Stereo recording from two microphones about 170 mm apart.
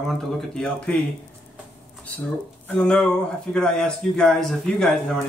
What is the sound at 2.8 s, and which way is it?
Speech, 5° left (ahead or behind).